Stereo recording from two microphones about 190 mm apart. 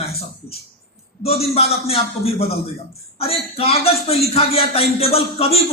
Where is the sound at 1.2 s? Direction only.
30° left (ahead or behind).